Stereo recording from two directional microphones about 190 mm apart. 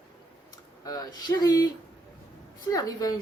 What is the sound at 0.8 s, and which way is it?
Speech, 20° left (ahead or behind).